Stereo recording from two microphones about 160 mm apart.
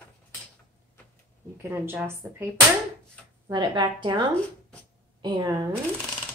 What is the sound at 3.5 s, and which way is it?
A woman's voice, 30° right (ahead or behind).